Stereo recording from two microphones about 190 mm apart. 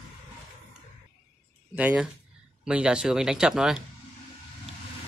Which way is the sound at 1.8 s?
5° right (ahead or behind).